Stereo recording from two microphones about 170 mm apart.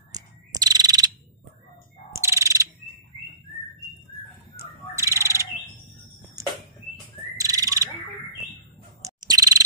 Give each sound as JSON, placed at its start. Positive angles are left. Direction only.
{"t": 0.1, "sound": "bird vocalization", "side_deg": -20}
{"t": 2.1, "sound": "bird", "side_deg": -15}
{"t": 4.6, "sound": "bird", "side_deg": -15}
{"t": 9.0, "sound": "bird", "side_deg": -20}